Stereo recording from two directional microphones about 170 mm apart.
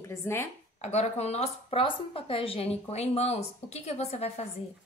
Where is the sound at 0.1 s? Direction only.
15° left (ahead or behind).